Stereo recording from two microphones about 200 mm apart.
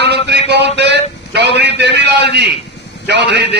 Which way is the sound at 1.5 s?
60° right (ahead or behind).